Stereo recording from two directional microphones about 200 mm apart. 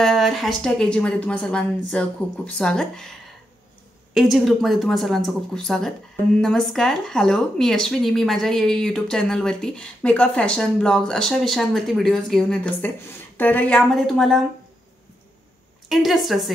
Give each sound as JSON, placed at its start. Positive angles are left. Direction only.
{"t": 0.0, "sound": "speech", "side_deg": 0}
{"t": 15.9, "sound": "speech", "side_deg": 0}